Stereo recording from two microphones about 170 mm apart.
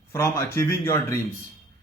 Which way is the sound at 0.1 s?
15° left (ahead or behind).